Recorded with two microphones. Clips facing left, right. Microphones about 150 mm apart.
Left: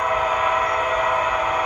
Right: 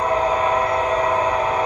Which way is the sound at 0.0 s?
30° right (ahead or behind).